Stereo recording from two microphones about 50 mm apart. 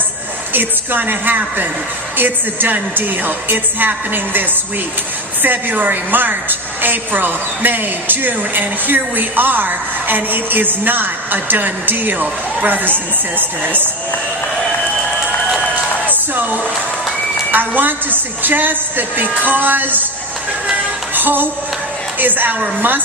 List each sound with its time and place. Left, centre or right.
0.5 s a woman's voice: right
16.3 s music: right
17.5 s a woman's voice: right
21.2 s music: right
22.2 s a woman's voice: right